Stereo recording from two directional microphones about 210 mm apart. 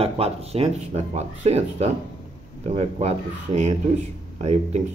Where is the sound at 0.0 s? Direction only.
30° right (ahead or behind).